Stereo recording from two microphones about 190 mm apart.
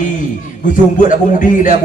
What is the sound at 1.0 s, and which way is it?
Speech, 45° left (ahead or behind).